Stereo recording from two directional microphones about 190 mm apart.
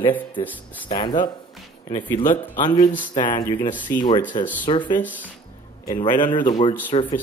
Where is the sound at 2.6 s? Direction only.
20° left (ahead or behind).